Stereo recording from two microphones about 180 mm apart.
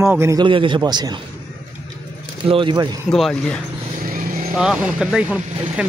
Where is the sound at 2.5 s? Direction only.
30° right (ahead or behind).